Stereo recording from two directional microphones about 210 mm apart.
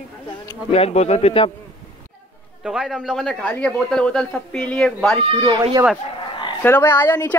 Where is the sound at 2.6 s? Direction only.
5° right (ahead or behind).